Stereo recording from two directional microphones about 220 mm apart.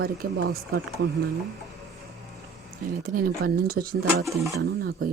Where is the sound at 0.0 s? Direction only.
45° right (ahead or behind).